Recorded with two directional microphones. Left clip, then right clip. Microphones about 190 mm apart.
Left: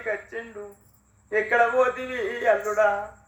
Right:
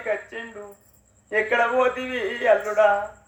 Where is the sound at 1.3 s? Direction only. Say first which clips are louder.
Even; 30° right (ahead or behind).